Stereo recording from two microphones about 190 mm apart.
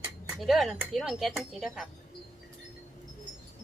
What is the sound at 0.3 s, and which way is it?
Speech, centre (ahead or behind).